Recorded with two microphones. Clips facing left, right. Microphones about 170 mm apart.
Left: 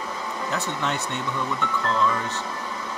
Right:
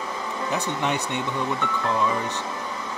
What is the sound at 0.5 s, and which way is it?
Speech, 15° right (ahead or behind).